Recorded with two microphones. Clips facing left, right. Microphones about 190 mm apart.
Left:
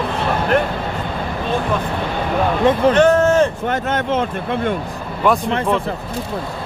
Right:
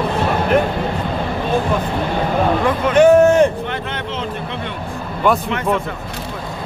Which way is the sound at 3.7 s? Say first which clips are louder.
Left 6 dB; 45° left (ahead or behind).